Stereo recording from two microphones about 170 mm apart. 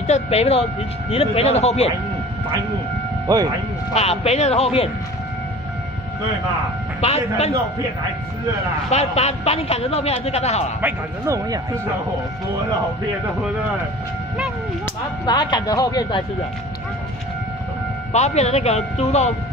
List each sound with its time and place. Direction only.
0.0 s a man's voice: 40° left (ahead or behind)
3.9 s a man's voice: 40° left (ahead or behind)
7.0 s a man's voice: 40° left (ahead or behind)
8.9 s a man's voice: 40° left (ahead or behind)
10.8 s a man's voice: 15° right (ahead or behind)
15.2 s speech: 25° left (ahead or behind)
18.1 s a man's voice: 40° left (ahead or behind)